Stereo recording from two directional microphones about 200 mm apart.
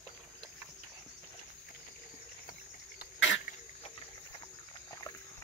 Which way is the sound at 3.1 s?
65° left (ahead or behind).